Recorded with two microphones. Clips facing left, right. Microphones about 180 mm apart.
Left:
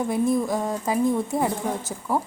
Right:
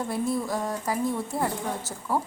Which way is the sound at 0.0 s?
20° left (ahead or behind).